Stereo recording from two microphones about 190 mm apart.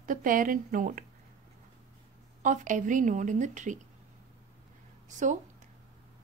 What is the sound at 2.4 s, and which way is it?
A woman's voice, 45° right (ahead or behind).